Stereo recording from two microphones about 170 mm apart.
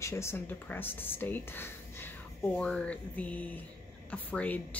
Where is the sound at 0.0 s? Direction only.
15° left (ahead or behind).